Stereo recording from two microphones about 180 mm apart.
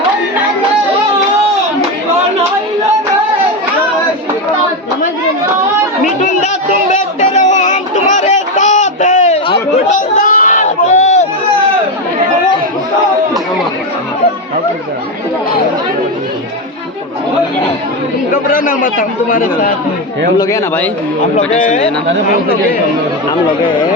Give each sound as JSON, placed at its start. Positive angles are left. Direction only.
{"t": 6.9, "sound": "a sound", "side_deg": 40}
{"t": 18.5, "sound": "a man's voice", "side_deg": 50}
{"t": 20.4, "sound": "a man's voice", "side_deg": 15}
{"t": 21.3, "sound": "a man's voice", "side_deg": 40}